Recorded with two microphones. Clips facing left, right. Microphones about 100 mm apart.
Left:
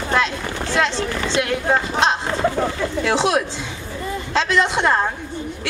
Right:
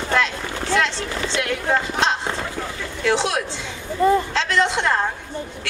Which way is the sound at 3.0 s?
20° left (ahead or behind).